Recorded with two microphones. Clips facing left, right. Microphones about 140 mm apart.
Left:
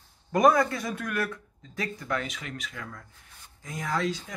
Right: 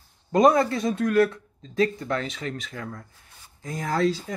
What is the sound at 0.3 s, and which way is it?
Speech, 25° right (ahead or behind).